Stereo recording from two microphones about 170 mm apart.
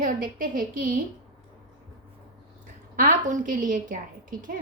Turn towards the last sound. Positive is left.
turn(degrees=-55)  # may be behind; listen again after turning